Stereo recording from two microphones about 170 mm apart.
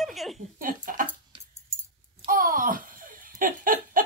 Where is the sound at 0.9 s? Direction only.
55° right (ahead or behind).